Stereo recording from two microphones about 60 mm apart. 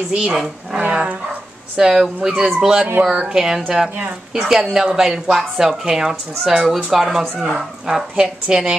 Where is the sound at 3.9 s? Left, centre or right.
Right.